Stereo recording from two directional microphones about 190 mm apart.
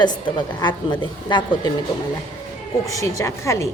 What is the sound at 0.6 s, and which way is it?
A woman's voice, 25° left (ahead or behind).